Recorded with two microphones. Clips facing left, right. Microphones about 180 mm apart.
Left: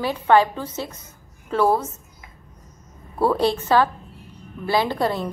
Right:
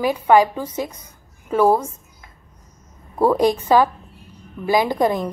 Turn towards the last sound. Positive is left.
turn(degrees=-15)  # may be behind; listen again after turning